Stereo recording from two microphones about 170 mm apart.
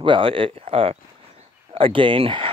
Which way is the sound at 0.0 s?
30° right (ahead or behind).